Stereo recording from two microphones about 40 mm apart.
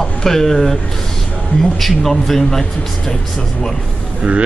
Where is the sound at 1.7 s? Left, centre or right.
Centre.